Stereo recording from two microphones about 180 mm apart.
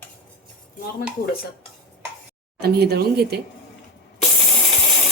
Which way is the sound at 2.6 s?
65° right (ahead or behind).